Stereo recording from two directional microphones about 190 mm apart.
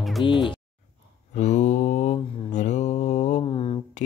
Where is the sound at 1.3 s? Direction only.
40° left (ahead or behind).